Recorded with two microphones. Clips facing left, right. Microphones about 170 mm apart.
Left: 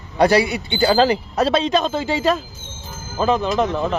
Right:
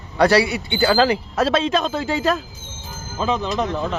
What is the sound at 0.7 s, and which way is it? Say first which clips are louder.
Speech: left 3 dB; 30° left (ahead or behind).